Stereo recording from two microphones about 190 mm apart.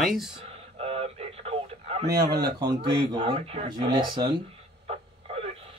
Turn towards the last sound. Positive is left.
turn(degrees=-25)  # may be behind; listen again after turning